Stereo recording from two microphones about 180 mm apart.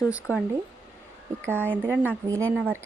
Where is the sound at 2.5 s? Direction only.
5° right (ahead or behind).